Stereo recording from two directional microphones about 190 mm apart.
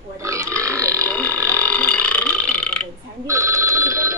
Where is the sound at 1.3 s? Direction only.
15° right (ahead or behind).